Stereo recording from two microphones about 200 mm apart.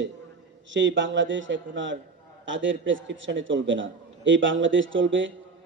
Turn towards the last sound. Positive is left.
turn(degrees=-70)  # may be behind; listen again after turning